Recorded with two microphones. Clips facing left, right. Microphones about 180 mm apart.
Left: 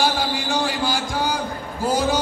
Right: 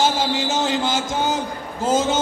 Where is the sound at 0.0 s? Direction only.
20° right (ahead or behind).